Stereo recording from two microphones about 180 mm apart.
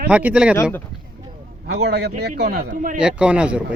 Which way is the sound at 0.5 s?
15° left (ahead or behind).